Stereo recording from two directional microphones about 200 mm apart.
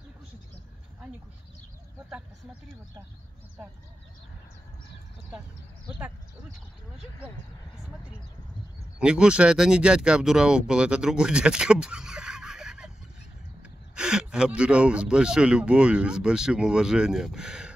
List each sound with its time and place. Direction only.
7.8 s speech: 5° right (ahead or behind)